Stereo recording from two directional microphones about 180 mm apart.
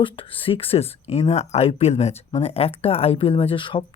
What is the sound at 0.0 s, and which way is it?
Speech, 30° left (ahead or behind).